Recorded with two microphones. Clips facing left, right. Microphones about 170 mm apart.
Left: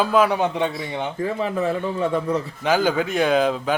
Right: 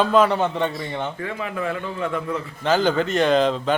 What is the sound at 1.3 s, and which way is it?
A man's voice, 35° left (ahead or behind).